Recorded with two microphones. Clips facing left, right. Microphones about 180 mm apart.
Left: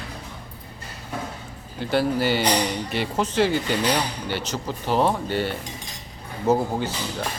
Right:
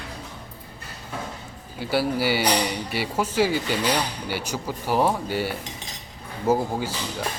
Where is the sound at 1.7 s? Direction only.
10° right (ahead or behind).